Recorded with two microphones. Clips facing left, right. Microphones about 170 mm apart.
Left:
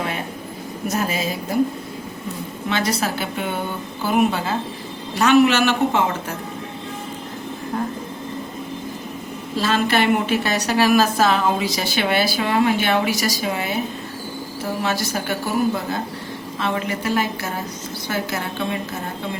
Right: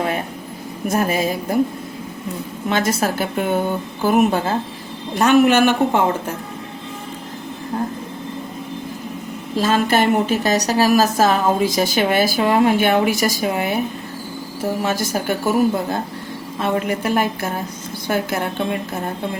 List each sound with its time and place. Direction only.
0.9 s a woman's voice: 50° right (ahead or behind)
2.6 s a woman's voice: 45° right (ahead or behind)
9.6 s a woman's voice: 45° right (ahead or behind)
14.8 s a woman's voice: 45° right (ahead or behind)